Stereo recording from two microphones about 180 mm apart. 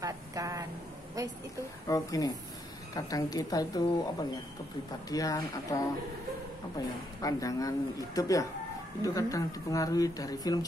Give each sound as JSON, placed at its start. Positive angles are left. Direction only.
{"t": 0.0, "sound": "vehicle", "side_deg": -20}
{"t": 1.9, "sound": "speech", "side_deg": 20}
{"t": 7.2, "sound": "speech", "side_deg": 20}